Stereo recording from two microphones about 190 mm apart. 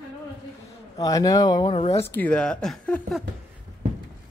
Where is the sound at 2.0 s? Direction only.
10° left (ahead or behind).